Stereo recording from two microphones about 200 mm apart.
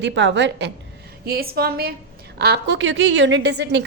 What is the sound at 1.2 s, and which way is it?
A woman's voice, 50° right (ahead or behind).